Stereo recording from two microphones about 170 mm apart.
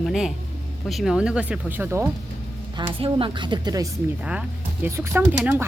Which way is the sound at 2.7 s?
30° right (ahead or behind).